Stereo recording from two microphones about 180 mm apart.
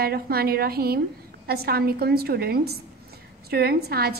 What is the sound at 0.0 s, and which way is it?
A woman's voice, 60° right (ahead or behind).